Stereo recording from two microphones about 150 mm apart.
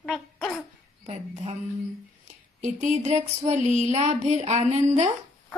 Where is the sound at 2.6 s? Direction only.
55° right (ahead or behind).